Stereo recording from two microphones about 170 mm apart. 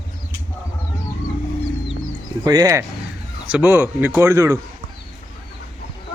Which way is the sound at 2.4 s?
20° right (ahead or behind).